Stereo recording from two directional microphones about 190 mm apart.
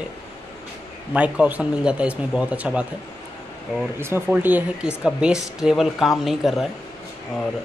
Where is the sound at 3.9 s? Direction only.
10° right (ahead or behind).